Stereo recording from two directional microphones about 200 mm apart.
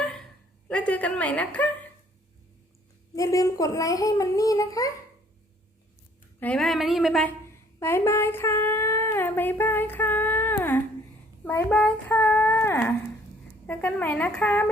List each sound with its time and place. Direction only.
0.7 s a woman's voice: 5° left (ahead or behind)
3.2 s a child's voice: 15° left (ahead or behind)
6.4 s a woman's voice: 5° left (ahead or behind)
7.8 s a child's voice: 15° left (ahead or behind)